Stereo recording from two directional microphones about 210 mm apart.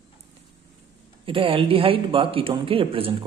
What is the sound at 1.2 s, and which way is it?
Speech, 25° right (ahead or behind).